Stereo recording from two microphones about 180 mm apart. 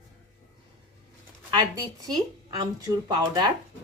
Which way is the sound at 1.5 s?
20° right (ahead or behind).